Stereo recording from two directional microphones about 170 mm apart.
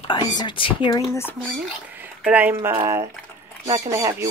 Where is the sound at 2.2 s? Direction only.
10° right (ahead or behind).